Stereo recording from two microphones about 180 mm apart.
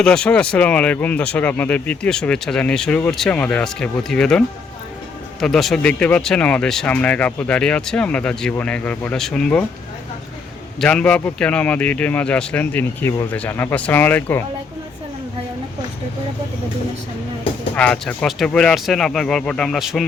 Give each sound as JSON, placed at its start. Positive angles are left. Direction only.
{"t": 0.0, "sound": "speech", "side_deg": 5}
{"t": 10.8, "sound": "speech", "side_deg": 5}
{"t": 17.7, "sound": "speech", "side_deg": 5}